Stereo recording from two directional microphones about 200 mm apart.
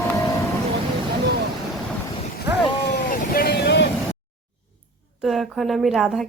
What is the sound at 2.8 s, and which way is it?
Vehicle, 50° left (ahead or behind).